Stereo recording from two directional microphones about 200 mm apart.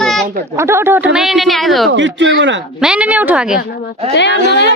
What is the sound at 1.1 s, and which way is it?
Speech, centre (ahead or behind).